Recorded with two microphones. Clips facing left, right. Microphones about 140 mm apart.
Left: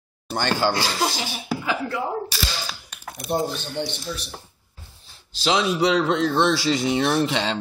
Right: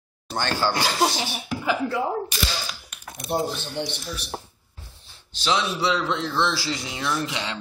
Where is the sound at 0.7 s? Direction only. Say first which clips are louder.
Right 1 dB; 20° right (ahead or behind).